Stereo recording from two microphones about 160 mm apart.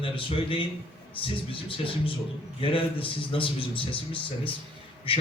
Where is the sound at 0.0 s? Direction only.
35° left (ahead or behind).